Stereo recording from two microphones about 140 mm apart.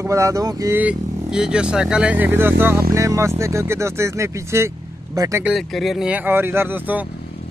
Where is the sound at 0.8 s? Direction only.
5° right (ahead or behind); by 5.4 s 25° right (ahead or behind).